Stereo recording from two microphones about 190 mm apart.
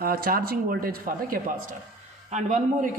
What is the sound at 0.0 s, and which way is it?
A woman's voice, 50° right (ahead or behind).